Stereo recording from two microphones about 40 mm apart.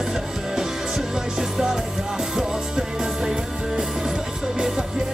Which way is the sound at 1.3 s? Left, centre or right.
Centre.